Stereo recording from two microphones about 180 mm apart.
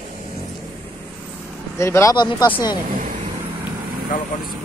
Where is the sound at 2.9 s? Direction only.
50° right (ahead or behind).